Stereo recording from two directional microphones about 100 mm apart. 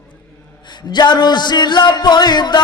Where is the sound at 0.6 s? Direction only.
50° left (ahead or behind).